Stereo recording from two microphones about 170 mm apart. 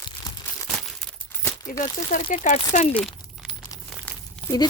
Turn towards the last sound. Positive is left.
turn(degrees=5)  # may be behind; listen again after turning